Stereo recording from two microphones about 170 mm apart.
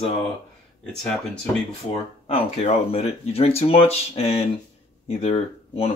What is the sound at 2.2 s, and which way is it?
Speech, 35° left (ahead or behind).